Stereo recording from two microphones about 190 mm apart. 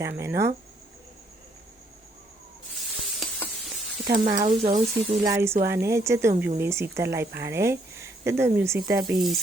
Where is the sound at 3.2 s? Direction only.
Centre (ahead or behind).